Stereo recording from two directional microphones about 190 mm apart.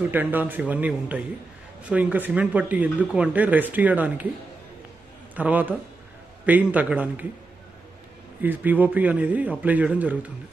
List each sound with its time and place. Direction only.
0.1 s speech: 10° right (ahead or behind)
5.3 s a man's voice: 10° right (ahead or behind)
8.4 s speech: 10° right (ahead or behind)